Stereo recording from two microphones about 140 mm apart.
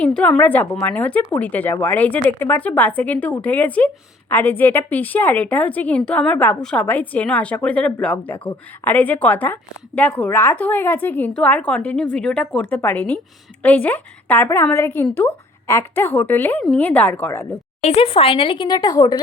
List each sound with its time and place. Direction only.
0.0 s a woman's voice: 10° left (ahead or behind)
17.8 s speech: 45° left (ahead or behind); by 19.2 s 25° left (ahead or behind)